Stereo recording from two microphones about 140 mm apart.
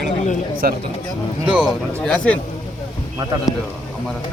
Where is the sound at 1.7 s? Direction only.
5° left (ahead or behind).